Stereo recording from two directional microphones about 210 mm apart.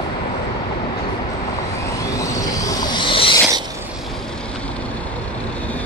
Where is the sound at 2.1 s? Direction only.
15° left (ahead or behind).